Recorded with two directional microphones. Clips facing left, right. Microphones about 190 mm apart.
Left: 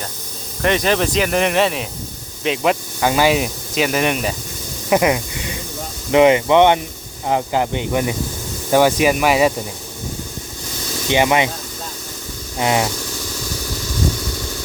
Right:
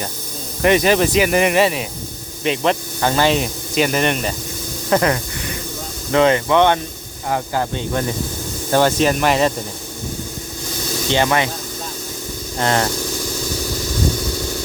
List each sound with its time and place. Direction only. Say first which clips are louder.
0.6 s speech: right 3 dB; 10° right (ahead or behind); by 9.5 s 5° left (ahead or behind)
11.1 s speech: left 2 dB; 15° left (ahead or behind)
12.5 s speech: even; 10° left (ahead or behind)